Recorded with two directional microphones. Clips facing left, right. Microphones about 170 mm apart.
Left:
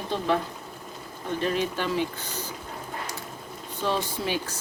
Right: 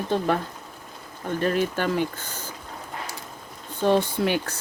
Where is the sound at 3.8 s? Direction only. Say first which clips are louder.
Right 7 dB; 55° right (ahead or behind).